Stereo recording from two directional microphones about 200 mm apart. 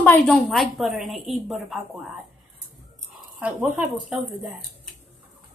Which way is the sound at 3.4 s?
5° right (ahead or behind).